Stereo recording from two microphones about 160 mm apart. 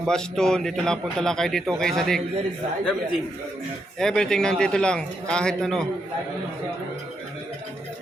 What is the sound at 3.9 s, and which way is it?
A man's voice, 5° left (ahead or behind).